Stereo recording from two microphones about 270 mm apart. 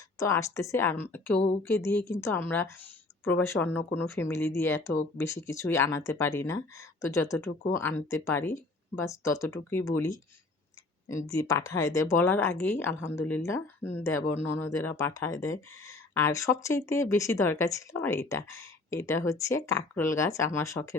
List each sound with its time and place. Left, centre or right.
0.2 s speech: centre
11.3 s speech: centre